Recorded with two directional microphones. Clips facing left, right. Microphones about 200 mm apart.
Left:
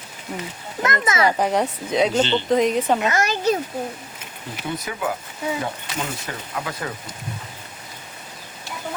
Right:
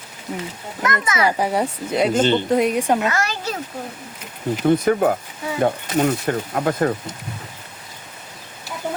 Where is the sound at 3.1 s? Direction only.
20° left (ahead or behind).